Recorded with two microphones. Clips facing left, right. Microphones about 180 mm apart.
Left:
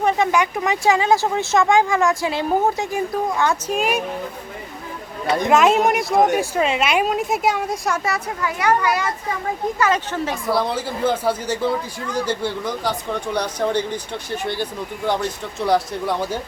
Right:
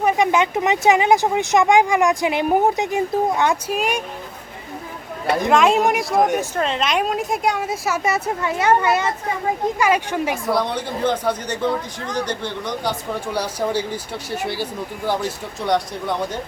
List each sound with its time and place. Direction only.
0.0 s speech: 15° right (ahead or behind)
3.7 s speech: centre (ahead or behind)
5.2 s speech: centre (ahead or behind)
8.0 s speech: 25° right (ahead or behind)
9.7 s speech: 15° right (ahead or behind)
10.4 s speech: centre (ahead or behind)